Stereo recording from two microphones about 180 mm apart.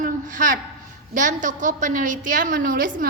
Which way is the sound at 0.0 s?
45° right (ahead or behind).